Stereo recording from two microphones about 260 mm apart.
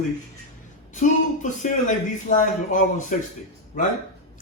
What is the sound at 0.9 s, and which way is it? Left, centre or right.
A man's voice, left.